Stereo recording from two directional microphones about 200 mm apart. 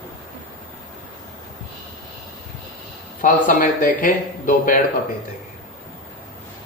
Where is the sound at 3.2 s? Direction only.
40° left (ahead or behind).